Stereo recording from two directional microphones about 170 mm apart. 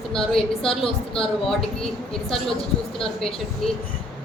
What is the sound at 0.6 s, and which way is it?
Speech, 30° left (ahead or behind).